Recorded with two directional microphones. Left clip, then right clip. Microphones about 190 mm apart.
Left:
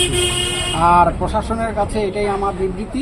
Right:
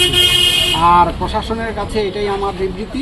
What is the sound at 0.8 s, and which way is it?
Speech, 20° left (ahead or behind).